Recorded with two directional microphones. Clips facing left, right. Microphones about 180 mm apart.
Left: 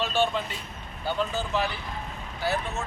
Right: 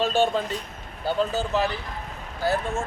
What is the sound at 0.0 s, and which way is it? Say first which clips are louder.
Speech: right 4 dB; 45° right (ahead or behind).